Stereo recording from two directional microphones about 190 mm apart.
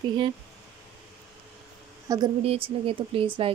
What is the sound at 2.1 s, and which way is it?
A woman's voice, 20° right (ahead or behind).